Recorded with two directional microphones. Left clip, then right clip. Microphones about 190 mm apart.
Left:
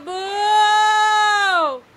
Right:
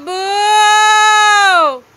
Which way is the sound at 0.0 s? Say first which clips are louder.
Right 7 dB; 20° right (ahead or behind).